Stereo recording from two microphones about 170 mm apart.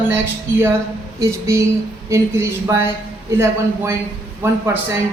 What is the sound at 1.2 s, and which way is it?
A man's voice, 15° right (ahead or behind).